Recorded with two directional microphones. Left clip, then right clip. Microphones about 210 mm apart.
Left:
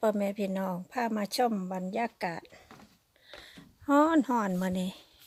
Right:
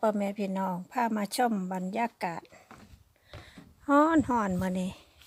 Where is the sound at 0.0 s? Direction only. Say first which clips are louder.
Even; 5° left (ahead or behind).